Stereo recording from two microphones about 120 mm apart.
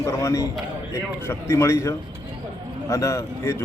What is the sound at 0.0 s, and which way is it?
A man's voice, 25° left (ahead or behind).